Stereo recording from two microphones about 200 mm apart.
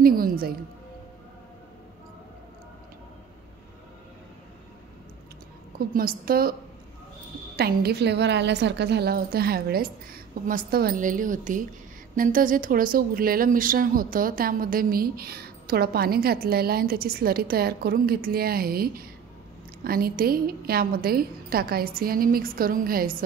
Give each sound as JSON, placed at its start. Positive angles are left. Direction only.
{"t": 0.0, "sound": "music", "side_deg": -45}
{"t": 5.8, "sound": "speech", "side_deg": -45}
{"t": 7.5, "sound": "speech", "side_deg": -50}